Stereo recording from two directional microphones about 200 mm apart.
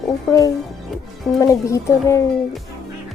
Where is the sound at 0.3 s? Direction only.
15° left (ahead or behind).